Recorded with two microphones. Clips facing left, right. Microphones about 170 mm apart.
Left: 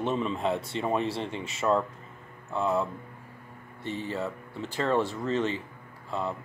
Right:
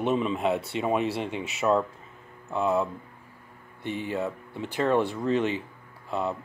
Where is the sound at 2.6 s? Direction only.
15° right (ahead or behind).